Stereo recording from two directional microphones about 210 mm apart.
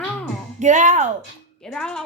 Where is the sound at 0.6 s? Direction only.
35° right (ahead or behind).